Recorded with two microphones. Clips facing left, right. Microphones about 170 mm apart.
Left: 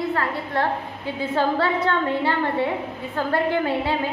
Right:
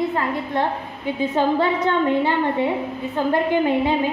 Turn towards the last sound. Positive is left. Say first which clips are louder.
# right 4 dB
turn(degrees=-20)  # may be behind; listen again after turning